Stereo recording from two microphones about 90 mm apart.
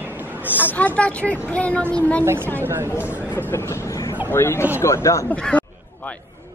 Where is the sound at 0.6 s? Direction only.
20° left (ahead or behind).